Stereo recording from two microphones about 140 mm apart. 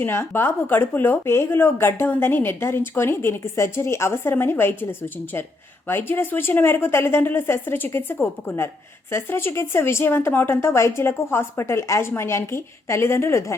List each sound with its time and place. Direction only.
0.0 s a woman's voice: 15° left (ahead or behind)